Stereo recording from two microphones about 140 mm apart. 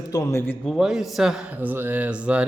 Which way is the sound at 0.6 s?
Centre (ahead or behind).